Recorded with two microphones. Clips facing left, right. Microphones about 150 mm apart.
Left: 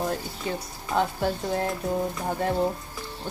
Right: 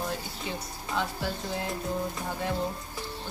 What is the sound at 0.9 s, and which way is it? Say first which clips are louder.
Speech: left 7 dB; 50° left (ahead or behind).